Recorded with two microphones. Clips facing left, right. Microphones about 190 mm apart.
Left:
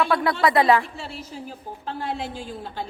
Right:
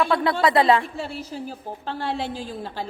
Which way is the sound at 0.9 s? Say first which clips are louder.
Right 5 dB; 55° right (ahead or behind).